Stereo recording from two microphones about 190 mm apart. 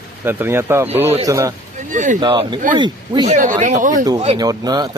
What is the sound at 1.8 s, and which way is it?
Speech, 40° right (ahead or behind).